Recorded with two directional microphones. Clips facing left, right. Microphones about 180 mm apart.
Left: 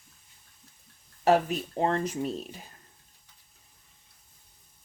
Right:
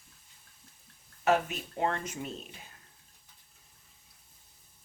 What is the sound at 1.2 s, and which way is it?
Speech, 35° left (ahead or behind).